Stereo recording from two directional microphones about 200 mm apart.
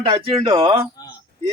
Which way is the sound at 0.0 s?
30° right (ahead or behind).